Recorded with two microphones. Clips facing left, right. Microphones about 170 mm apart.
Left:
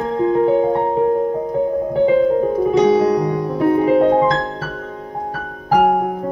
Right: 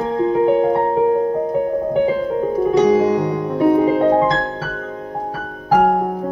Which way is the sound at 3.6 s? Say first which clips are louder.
Even; centre (ahead or behind).